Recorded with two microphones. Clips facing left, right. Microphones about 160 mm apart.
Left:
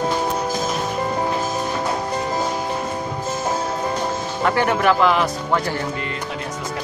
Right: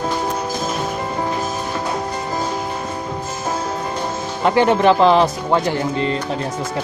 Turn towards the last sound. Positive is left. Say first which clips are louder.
# right 5 dB
turn(degrees=-25)  # may be behind; listen again after turning